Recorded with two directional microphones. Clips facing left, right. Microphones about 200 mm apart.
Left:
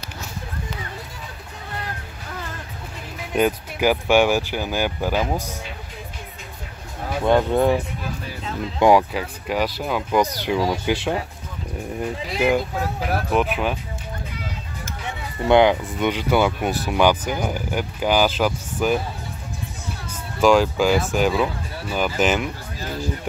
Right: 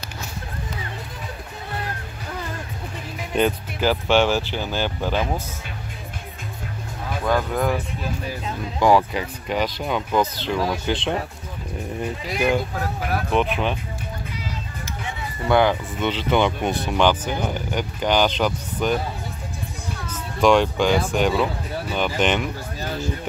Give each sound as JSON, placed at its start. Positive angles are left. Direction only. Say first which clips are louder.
{"t": 3.3, "sound": "speech", "louder": "left 1 dB", "side_deg": 10}
{"t": 7.2, "sound": "speech", "louder": "left 5 dB", "side_deg": 25}
{"t": 9.1, "sound": "speech", "louder": "even", "side_deg": 5}
{"t": 13.3, "sound": "speech", "louder": "even", "side_deg": 5}
{"t": 15.4, "sound": "speech", "louder": "left 3 dB", "side_deg": 20}
{"t": 20.1, "sound": "speech", "louder": "left 1 dB", "side_deg": 5}